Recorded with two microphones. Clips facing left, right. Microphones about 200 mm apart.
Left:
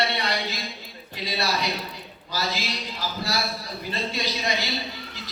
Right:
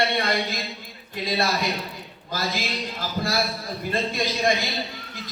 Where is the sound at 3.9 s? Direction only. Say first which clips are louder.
Right 4 dB; 50° right (ahead or behind).